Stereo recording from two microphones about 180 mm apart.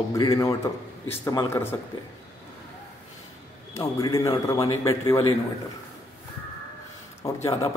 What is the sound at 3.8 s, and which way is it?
Speech, 20° left (ahead or behind).